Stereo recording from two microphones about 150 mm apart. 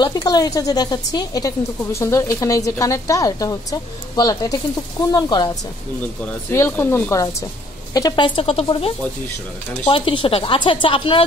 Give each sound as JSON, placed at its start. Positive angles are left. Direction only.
{"t": 0.0, "sound": "speech", "side_deg": 25}
{"t": 6.5, "sound": "speech", "side_deg": 15}
{"t": 8.4, "sound": "speech", "side_deg": 40}